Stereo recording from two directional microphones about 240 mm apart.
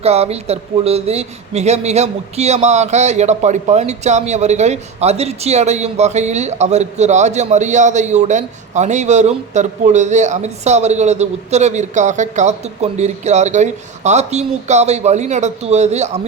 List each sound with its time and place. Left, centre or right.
0.0 s speech: right